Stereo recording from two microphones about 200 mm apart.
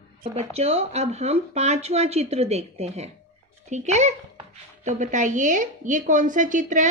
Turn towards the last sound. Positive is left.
turn(degrees=-40)  # may be behind; listen again after turning